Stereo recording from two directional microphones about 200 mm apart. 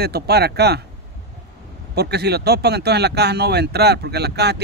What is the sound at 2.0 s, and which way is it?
Speech, 55° right (ahead or behind).